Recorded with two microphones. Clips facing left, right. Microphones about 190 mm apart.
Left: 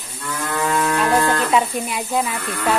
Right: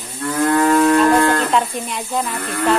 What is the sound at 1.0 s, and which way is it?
Livestock, 5° left (ahead or behind).